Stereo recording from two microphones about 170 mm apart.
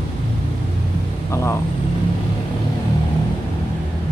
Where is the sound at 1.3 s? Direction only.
15° left (ahead or behind).